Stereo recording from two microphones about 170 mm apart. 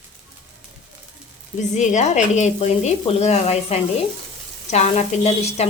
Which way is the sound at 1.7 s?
45° left (ahead or behind).